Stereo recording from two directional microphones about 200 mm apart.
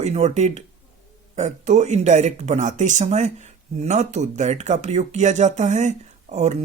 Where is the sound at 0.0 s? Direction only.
35° right (ahead or behind).